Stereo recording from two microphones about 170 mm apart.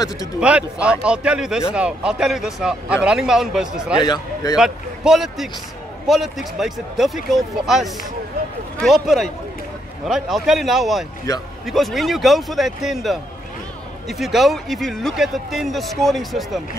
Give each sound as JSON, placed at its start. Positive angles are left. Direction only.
{"t": 0.4, "sound": "speech", "side_deg": -5}
{"t": 4.0, "sound": "a man's voice", "side_deg": 25}
{"t": 4.6, "sound": "speech", "side_deg": -5}